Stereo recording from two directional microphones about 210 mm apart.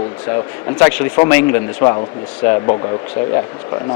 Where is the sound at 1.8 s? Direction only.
10° left (ahead or behind).